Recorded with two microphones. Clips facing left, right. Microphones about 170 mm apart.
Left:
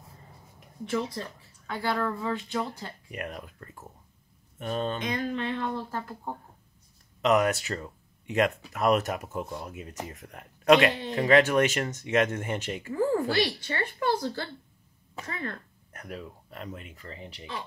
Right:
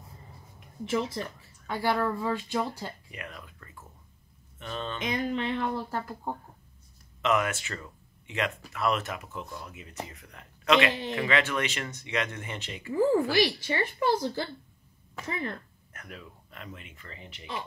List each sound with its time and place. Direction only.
0.8 s speech: 15° right (ahead or behind)
3.1 s speech: 45° left (ahead or behind)
5.0 s speech: 15° right (ahead or behind)
7.2 s speech: 40° left (ahead or behind)
10.9 s speech: 20° right (ahead or behind)
11.1 s speech: 40° left (ahead or behind)
13.3 s speech: 10° right (ahead or behind)
15.9 s speech: 40° left (ahead or behind)